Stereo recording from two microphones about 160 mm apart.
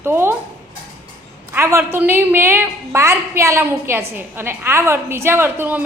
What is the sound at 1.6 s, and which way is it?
A woman's voice, 15° right (ahead or behind).